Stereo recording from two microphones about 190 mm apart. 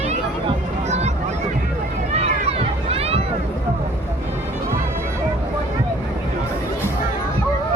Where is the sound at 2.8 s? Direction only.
30° right (ahead or behind).